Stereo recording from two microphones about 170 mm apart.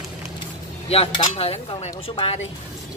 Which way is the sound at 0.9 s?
35° left (ahead or behind).